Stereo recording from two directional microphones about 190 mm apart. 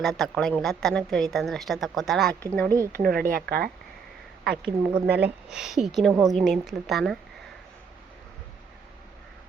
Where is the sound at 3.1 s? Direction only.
50° right (ahead or behind).